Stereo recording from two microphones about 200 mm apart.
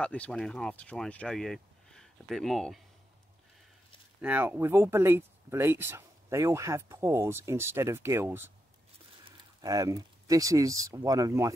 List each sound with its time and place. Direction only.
0.0 s speech: 5° left (ahead or behind)
4.2 s speech: 10° right (ahead or behind)